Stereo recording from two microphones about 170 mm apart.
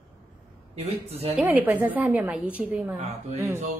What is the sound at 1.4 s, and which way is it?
A woman's voice, 10° right (ahead or behind).